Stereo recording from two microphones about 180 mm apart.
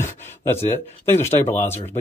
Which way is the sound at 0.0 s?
15° left (ahead or behind).